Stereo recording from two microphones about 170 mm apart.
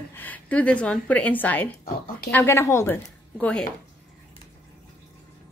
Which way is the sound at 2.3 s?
15° left (ahead or behind).